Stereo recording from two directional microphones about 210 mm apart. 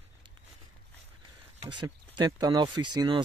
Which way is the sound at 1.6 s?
20° right (ahead or behind).